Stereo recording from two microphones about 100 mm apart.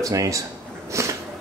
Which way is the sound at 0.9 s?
30° right (ahead or behind).